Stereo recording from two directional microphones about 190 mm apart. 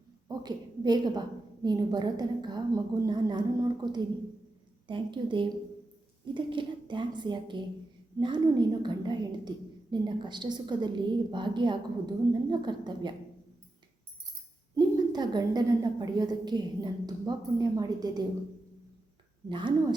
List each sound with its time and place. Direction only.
0.3 s a woman's voice: 20° right (ahead or behind)
14.8 s a woman's voice: 20° right (ahead or behind)
19.5 s a woman's voice: 25° right (ahead or behind)